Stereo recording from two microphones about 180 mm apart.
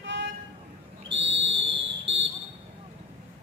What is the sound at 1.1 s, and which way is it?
Whistle, 90° right.